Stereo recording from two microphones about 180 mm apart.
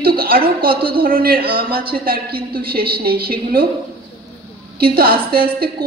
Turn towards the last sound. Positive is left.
turn(degrees=-55)  # may be behind; listen again after turning